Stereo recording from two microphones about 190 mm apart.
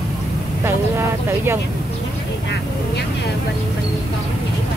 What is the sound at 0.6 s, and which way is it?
Speech, 15° right (ahead or behind).